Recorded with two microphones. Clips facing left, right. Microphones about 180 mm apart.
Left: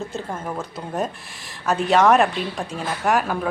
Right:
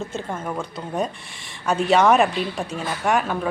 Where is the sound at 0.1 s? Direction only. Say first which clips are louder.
Right 1 dB; 5° left (ahead or behind).